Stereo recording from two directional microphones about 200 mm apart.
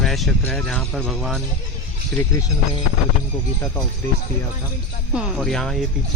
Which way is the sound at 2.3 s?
15° left (ahead or behind).